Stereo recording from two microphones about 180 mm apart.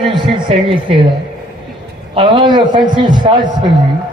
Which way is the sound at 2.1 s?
30° right (ahead or behind).